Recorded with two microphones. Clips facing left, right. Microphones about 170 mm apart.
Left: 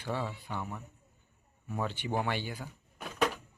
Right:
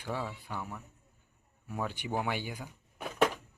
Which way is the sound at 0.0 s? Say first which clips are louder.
Left 1 dB; 10° right (ahead or behind).